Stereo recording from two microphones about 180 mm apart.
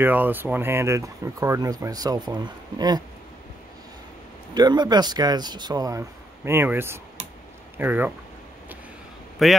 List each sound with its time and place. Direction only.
0.0 s speech: 10° right (ahead or behind)
4.6 s speech: 25° right (ahead or behind)
9.4 s a man's voice: centre (ahead or behind)